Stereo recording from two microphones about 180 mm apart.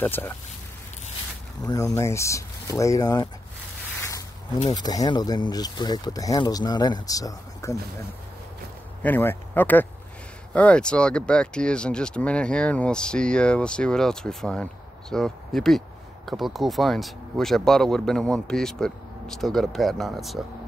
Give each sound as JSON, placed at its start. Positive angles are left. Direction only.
{"t": 0.0, "sound": "speech", "side_deg": 10}
{"t": 1.6, "sound": "speech", "side_deg": 20}
{"t": 4.7, "sound": "speech", "side_deg": 20}
{"t": 9.0, "sound": "speech", "side_deg": 10}